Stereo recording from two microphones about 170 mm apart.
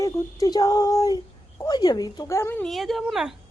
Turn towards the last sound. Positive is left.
turn(degrees=0)  # may be behind; listen again after turning